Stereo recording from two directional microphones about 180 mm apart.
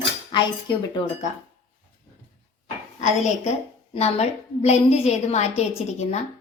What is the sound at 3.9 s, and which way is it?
A woman's voice, 35° left (ahead or behind).